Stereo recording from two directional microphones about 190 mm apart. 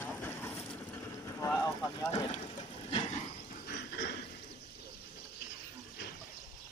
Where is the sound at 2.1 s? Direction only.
25° left (ahead or behind).